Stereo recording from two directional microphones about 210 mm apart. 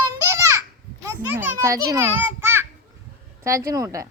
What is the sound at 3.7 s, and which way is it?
Speech, 15° right (ahead or behind).